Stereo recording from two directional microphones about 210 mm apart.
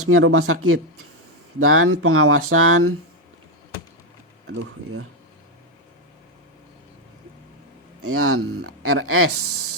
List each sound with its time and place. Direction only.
0.0 s speech: 85° right
8.0 s speech: 90° right